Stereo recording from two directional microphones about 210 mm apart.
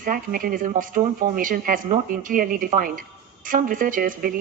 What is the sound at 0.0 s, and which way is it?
Speech, 40° right (ahead or behind).